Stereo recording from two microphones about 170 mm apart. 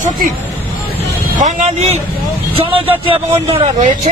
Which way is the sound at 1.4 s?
45° right (ahead or behind).